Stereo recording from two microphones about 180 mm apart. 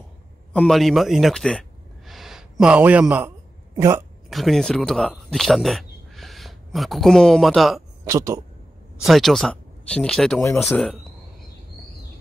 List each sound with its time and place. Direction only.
0.5 s a sound: 5° left (ahead or behind); by 4.0 s 15° right (ahead or behind)
4.3 s speech: centre (ahead or behind)
8.0 s speech: 15° right (ahead or behind)
9.0 s speech: centre (ahead or behind)